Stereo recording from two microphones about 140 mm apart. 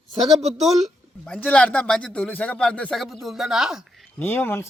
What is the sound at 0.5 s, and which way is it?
Speech, centre (ahead or behind).